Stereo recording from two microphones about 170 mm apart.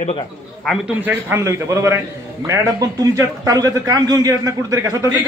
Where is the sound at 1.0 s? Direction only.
15° right (ahead or behind).